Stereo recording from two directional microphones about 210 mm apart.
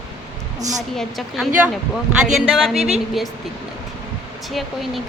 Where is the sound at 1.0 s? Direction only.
Centre (ahead or behind).